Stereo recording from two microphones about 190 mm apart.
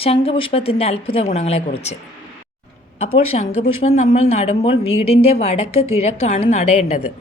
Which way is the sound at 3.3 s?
35° left (ahead or behind).